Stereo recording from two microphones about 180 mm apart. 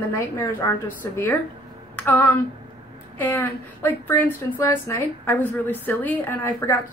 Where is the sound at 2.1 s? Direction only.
10° left (ahead or behind).